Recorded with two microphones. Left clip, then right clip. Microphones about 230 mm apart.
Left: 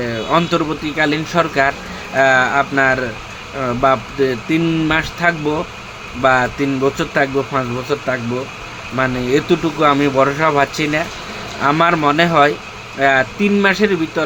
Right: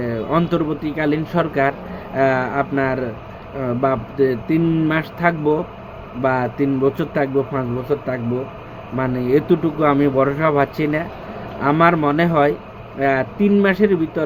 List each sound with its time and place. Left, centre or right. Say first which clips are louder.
0.0 s speech: left 4 dB; centre